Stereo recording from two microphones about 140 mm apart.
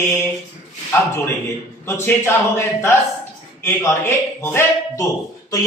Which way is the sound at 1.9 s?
20° left (ahead or behind).